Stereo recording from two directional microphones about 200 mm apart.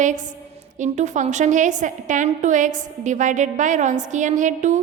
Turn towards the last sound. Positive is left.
turn(degrees=-40)  # may be behind; listen again after turning